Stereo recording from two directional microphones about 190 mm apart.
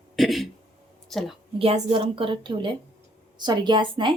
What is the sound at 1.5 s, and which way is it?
A woman's voice, 30° right (ahead or behind).